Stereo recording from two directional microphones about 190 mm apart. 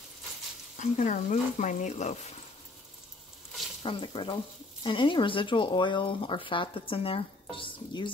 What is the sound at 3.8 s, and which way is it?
Speech, 25° left (ahead or behind).